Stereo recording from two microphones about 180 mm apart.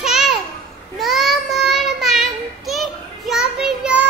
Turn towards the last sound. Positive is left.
turn(degrees=-5)  # may be behind; listen again after turning